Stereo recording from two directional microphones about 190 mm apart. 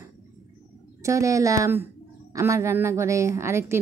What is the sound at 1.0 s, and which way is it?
A woman's voice, 15° right (ahead or behind).